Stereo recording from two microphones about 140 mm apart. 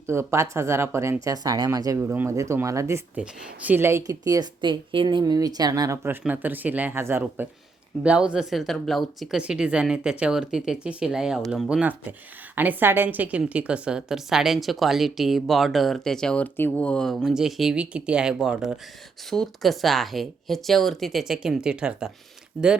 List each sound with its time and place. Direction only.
0.1 s speech: 20° right (ahead or behind)
3.2 s a woman's voice: 10° right (ahead or behind)